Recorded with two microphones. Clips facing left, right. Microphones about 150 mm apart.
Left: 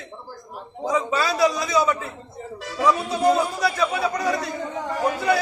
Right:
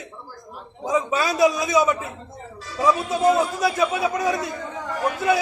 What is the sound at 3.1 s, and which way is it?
A man's voice, 20° right (ahead or behind).